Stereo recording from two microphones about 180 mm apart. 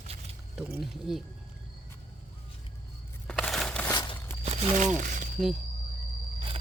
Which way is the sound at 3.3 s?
5° left (ahead or behind).